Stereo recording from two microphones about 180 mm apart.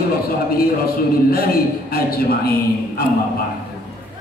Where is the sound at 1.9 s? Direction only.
55° left (ahead or behind).